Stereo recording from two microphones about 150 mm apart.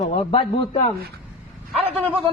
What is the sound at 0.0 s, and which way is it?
Speech, 45° left (ahead or behind).